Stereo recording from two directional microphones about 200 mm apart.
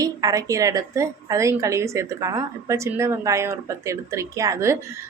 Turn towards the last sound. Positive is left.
turn(degrees=-15)  # may be behind; listen again after turning